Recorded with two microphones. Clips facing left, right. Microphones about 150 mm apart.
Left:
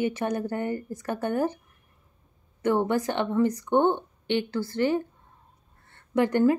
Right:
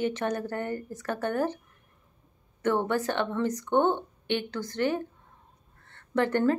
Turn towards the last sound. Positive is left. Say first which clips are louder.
# left 3 dB
turn(degrees=15)  # may be behind; listen again after turning